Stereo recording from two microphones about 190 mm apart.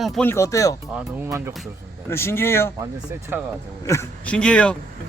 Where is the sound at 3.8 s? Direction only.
15° left (ahead or behind).